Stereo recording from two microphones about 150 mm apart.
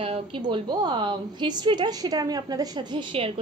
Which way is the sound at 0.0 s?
35° right (ahead or behind).